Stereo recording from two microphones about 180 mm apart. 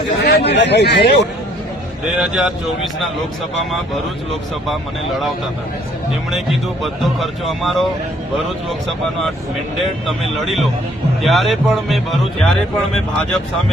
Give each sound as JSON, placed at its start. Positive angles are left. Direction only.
{"t": 0.3, "sound": "speech", "side_deg": 65}
{"t": 2.1, "sound": "speech", "side_deg": -5}
{"t": 6.3, "sound": "speech", "side_deg": 0}
{"t": 10.1, "sound": "speech", "side_deg": 0}